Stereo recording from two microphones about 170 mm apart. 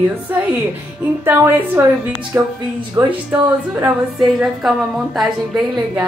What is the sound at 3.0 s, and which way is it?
Speech, 25° right (ahead or behind).